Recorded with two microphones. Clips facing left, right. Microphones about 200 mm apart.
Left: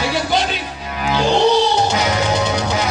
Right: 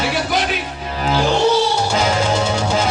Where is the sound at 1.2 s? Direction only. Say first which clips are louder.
Left 2 dB; 20° left (ahead or behind).